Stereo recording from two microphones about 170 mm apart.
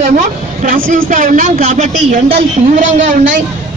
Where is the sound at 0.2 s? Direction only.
55° right (ahead or behind).